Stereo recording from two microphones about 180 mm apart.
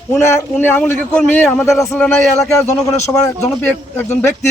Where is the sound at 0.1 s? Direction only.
15° left (ahead or behind).